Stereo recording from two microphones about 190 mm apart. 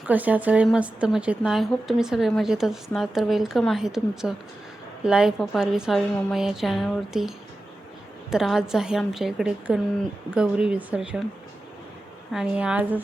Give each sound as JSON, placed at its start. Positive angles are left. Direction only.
{"t": 0.1, "sound": "a woman's voice", "side_deg": -10}
{"t": 12.3, "sound": "a woman's voice", "side_deg": -5}